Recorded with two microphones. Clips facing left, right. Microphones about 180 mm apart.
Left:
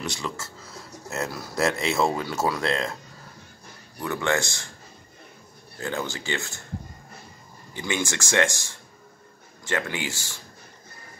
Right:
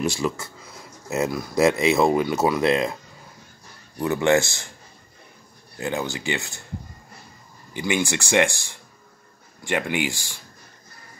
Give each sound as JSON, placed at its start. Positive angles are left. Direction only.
{"t": 0.2, "sound": "speech", "side_deg": -15}
{"t": 4.0, "sound": "speech", "side_deg": -20}
{"t": 5.8, "sound": "speech", "side_deg": -15}
{"t": 7.7, "sound": "speech", "side_deg": -15}
{"t": 9.7, "sound": "speech", "side_deg": -15}